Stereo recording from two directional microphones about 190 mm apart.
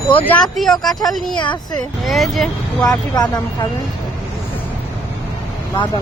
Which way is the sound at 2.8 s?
20° left (ahead or behind).